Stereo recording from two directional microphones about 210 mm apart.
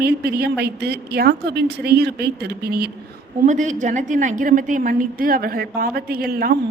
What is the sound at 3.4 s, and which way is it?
A woman's voice, 35° right (ahead or behind).